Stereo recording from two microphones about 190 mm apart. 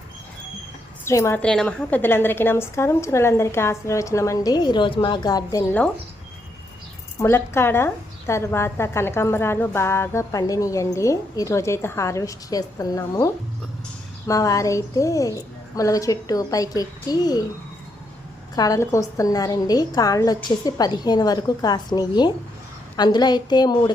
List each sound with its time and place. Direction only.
1.0 s a woman's voice: 15° left (ahead or behind)
7.2 s a woman's voice: 15° left (ahead or behind)
18.5 s a woman's voice: 20° left (ahead or behind)